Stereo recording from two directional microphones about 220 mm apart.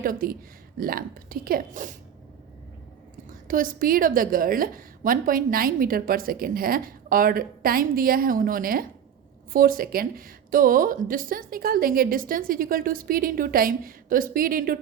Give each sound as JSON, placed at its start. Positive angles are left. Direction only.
{"t": 0.0, "sound": "a woman's voice", "side_deg": -40}
{"t": 3.2, "sound": "a woman's voice", "side_deg": -40}